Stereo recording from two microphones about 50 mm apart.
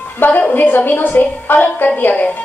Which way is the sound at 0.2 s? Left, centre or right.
Left.